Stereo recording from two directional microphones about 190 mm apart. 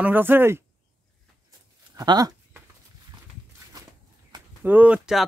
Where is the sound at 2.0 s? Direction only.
20° right (ahead or behind).